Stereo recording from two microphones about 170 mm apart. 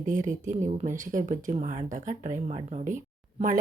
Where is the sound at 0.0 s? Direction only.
50° right (ahead or behind).